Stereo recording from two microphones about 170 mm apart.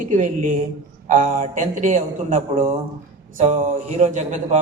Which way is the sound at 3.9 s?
45° right (ahead or behind).